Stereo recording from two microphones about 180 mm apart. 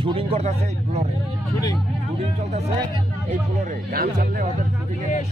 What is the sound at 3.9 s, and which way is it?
Speech, 55° right (ahead or behind).